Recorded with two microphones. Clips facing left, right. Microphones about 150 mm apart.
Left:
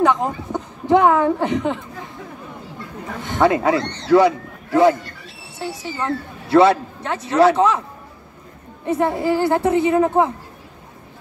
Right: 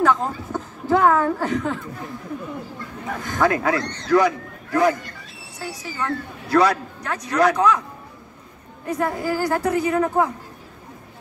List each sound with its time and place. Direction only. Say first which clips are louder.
0.0 s speech: left 2 dB; 20° left (ahead or behind)
3.2 s speech: left 4 dB; 25° left (ahead or behind)
5.9 s speech: left 1 dB; 25° left (ahead or behind)
8.8 s speech: left 5 dB; 25° left (ahead or behind)